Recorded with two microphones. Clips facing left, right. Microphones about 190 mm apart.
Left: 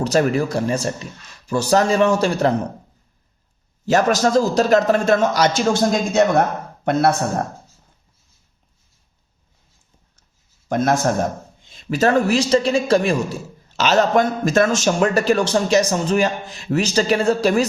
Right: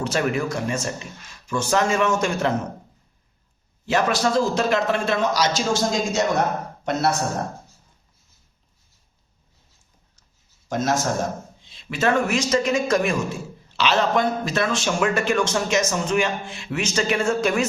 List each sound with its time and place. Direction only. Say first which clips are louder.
0.0 s a man's voice: left 5 dB; 40° left (ahead or behind)
3.8 s a man's voice: left 4 dB; 40° left (ahead or behind)
10.7 s a man's voice: left 5 dB; 60° left (ahead or behind)
11.6 s a man's voice: left 5 dB; 45° left (ahead or behind)